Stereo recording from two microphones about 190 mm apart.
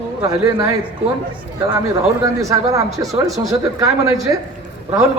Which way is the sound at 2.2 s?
15° right (ahead or behind).